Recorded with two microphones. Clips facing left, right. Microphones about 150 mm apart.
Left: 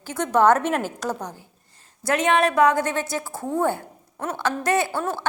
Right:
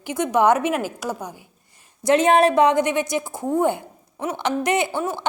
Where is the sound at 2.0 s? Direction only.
30° right (ahead or behind).